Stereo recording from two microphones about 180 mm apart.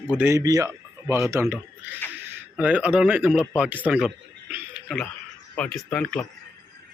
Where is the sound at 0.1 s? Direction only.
10° right (ahead or behind).